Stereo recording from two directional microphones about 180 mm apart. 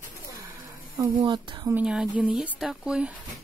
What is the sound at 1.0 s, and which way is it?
Speech, 25° right (ahead or behind).